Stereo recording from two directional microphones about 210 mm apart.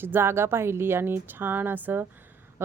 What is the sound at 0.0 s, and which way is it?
Speech, 10° right (ahead or behind).